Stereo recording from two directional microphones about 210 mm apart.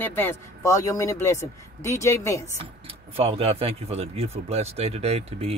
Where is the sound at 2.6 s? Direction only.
25° right (ahead or behind).